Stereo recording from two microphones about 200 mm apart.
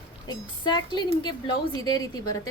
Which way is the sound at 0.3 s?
20° left (ahead or behind).